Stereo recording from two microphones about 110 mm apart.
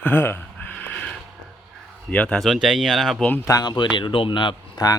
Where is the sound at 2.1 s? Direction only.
10° left (ahead or behind).